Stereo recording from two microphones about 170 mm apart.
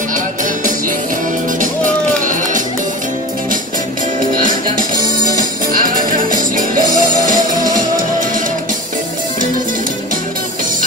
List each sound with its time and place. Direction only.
4.3 s music: 55° right (ahead or behind)